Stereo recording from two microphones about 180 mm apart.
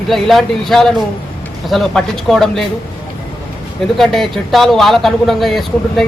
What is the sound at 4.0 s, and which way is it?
Speech, centre (ahead or behind).